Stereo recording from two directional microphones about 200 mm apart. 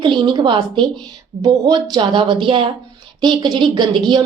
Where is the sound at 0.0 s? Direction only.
25° right (ahead or behind).